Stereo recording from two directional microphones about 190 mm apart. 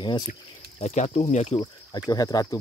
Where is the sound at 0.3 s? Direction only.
35° left (ahead or behind).